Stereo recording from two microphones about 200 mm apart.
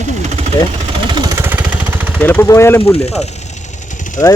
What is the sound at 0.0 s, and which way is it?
Vehicle, 35° right (ahead or behind).